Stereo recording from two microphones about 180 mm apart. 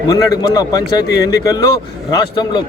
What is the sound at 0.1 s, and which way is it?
Speech, 20° left (ahead or behind).